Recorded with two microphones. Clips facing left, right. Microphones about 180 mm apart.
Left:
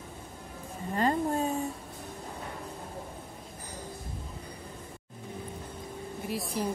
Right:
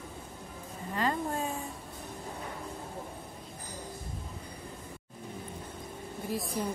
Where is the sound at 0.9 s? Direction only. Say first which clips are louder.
Left 4 dB; 40° left (ahead or behind).